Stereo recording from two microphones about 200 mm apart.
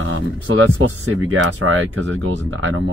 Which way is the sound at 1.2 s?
75° right (ahead or behind).